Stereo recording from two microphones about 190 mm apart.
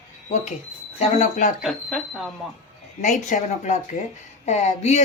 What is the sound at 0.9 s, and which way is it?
Speech, 35° left (ahead or behind).